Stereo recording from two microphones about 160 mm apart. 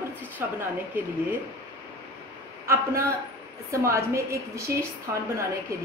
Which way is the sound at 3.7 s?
20° right (ahead or behind).